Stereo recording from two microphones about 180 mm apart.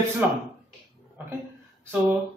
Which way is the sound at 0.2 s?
10° right (ahead or behind).